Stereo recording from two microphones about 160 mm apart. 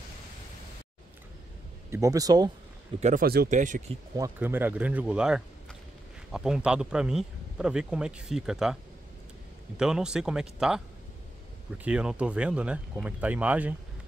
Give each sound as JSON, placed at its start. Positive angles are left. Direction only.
{"t": 1.9, "sound": "speech", "side_deg": -20}
{"t": 3.2, "sound": "speech", "side_deg": -75}
{"t": 3.4, "sound": "speech", "side_deg": -50}
{"t": 4.2, "sound": "speech", "side_deg": -15}
{"t": 9.8, "sound": "speech", "side_deg": -5}
{"t": 11.8, "sound": "speech", "side_deg": -5}